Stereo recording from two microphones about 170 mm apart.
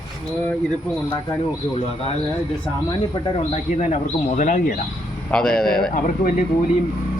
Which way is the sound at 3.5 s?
45° left (ahead or behind).